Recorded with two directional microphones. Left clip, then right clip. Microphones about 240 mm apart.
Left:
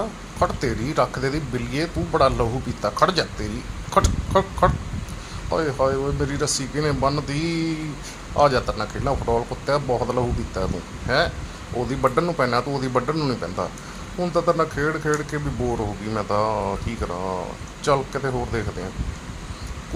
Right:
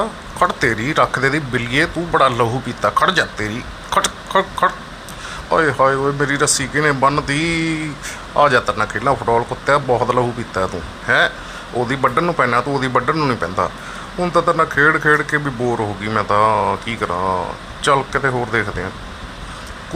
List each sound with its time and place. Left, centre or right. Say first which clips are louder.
0.3 s speech: right 7 dB; centre